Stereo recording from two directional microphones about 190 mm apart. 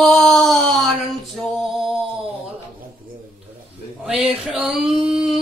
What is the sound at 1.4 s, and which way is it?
Music, centre (ahead or behind).